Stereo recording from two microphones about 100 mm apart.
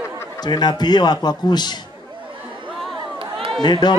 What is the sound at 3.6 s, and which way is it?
Speech, 45° left (ahead or behind).